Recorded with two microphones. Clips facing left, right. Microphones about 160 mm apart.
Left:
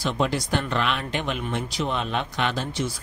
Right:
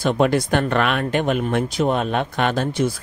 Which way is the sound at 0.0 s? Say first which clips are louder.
Right 7 dB; 55° right (ahead or behind).